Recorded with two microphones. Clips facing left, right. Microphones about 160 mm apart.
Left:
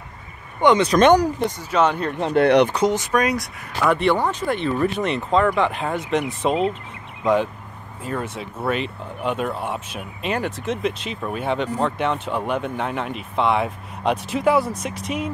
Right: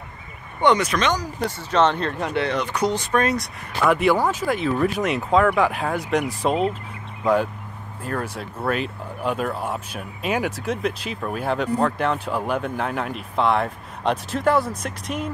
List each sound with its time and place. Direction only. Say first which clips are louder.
0.6 s speech: left 2 dB; 15° left (ahead or behind)
0.9 s speech: left 9 dB; 55° left (ahead or behind)
1.4 s speech: even; 10° left (ahead or behind)
2.3 s speech: left 12 dB; 60° left (ahead or behind)
2.7 s speech: left 3 dB; 25° left (ahead or behind)
3.1 s speech: left 1 dB; 10° left (ahead or behind)
3.3 s speech: even; centre (ahead or behind)
8.0 s speech: even; centre (ahead or behind)